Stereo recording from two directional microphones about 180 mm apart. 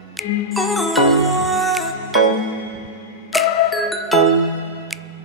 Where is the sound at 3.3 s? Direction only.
Centre (ahead or behind).